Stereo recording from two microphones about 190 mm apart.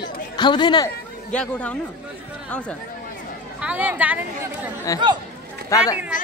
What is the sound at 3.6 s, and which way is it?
Speech, 10° right (ahead or behind).